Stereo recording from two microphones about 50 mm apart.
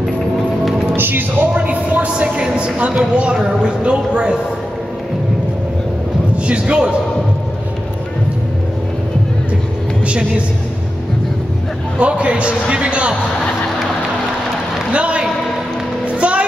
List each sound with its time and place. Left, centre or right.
0.9 s music: right
1.5 s a sound: right
3.6 s a man's voice: right
6.3 s speech: right
10.0 s a woman's voice: right
12.0 s a man's voice: right
14.9 s a man's voice: right
16.1 s music: right